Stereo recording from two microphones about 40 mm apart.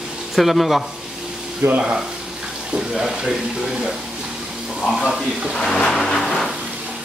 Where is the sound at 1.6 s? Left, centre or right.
Right.